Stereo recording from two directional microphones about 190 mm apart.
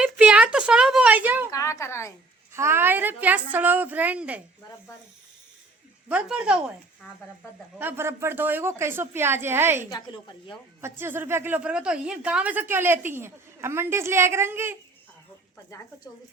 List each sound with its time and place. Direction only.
0.0 s a woman's voice: 5° right (ahead or behind)
1.5 s a woman's voice: 15° left (ahead or behind)
2.5 s a woman's voice: 15° right (ahead or behind)
6.1 s speech: 5° right (ahead or behind)
7.8 s a woman's voice: 10° right (ahead or behind)
9.9 s a woman's voice: 25° left (ahead or behind)
10.8 s a woman's voice: 15° right (ahead or behind)